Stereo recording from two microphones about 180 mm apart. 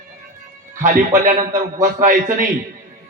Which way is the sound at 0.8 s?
45° right (ahead or behind).